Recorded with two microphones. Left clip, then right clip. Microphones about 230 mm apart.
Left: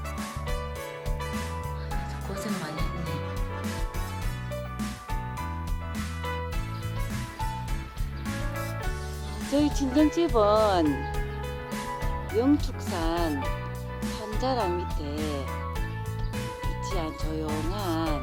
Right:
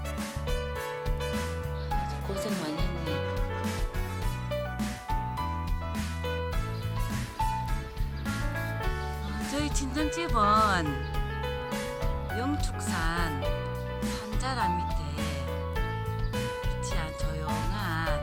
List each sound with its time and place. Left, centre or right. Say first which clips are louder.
2.3 s music: even; centre
9.5 s speech: left 8 dB; centre
12.4 s speech: left 9 dB; centre
14.4 s speech: left 3 dB; centre
17.7 s music: left 4 dB; centre